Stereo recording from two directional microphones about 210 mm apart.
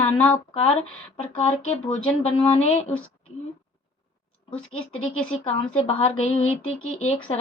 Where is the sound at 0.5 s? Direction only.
30° left (ahead or behind).